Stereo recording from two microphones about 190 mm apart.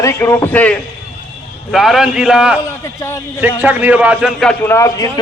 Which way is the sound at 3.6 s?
10° right (ahead or behind).